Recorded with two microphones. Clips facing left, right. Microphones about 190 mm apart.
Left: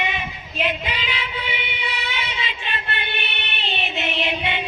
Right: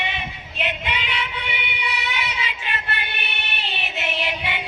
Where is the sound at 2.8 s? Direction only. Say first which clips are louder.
Left 2 dB; 25° left (ahead or behind).